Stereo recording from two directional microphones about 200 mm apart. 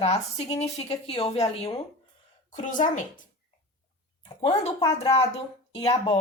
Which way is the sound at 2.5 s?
40° left (ahead or behind).